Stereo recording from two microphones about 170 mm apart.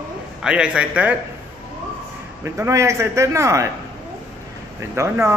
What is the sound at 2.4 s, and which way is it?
A man's voice, 15° right (ahead or behind).